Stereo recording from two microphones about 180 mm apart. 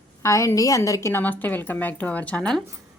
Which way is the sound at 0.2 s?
15° left (ahead or behind).